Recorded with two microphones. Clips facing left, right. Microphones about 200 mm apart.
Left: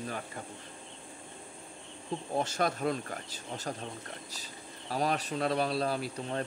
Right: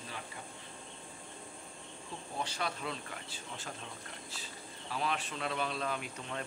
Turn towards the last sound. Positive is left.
turn(degrees=35)  # may be behind; listen again after turning